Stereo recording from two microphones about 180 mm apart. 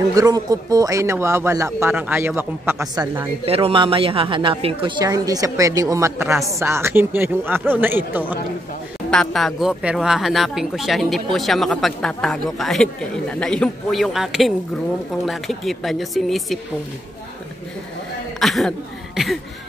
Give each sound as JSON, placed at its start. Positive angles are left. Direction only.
{"t": 0.1, "sound": "speech", "side_deg": -20}
{"t": 3.4, "sound": "a man's voice", "side_deg": -30}
{"t": 5.0, "sound": "speech", "side_deg": -20}
{"t": 9.1, "sound": "speech", "side_deg": 0}
{"t": 18.4, "sound": "speech", "side_deg": 0}